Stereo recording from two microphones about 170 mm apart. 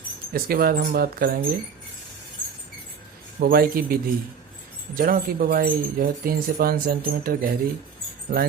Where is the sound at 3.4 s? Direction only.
60° right (ahead or behind).